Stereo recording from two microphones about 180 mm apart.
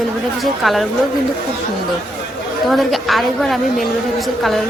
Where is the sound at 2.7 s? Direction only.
Centre (ahead or behind).